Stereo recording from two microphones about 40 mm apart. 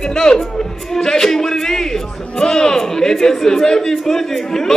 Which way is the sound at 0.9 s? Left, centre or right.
Centre.